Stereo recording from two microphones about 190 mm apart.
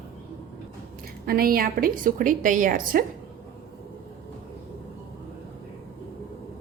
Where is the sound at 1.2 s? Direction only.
50° right (ahead or behind).